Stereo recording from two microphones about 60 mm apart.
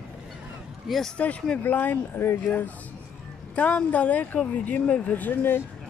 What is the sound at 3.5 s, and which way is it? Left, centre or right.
Speech, left.